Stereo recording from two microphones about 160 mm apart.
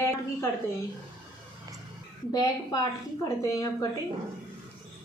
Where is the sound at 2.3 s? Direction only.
25° left (ahead or behind).